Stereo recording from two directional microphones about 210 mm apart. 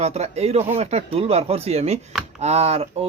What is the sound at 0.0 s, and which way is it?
Speech, 30° right (ahead or behind).